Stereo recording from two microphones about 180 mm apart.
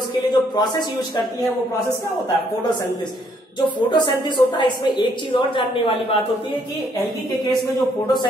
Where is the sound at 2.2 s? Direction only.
25° left (ahead or behind).